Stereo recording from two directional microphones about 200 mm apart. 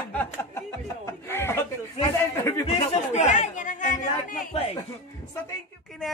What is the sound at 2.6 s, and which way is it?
Chatter, 30° left (ahead or behind).